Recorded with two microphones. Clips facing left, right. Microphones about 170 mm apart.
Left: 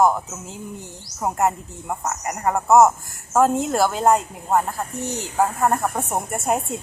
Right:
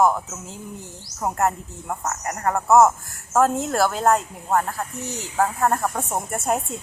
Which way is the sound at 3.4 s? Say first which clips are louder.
Left 2 dB; 15° left (ahead or behind).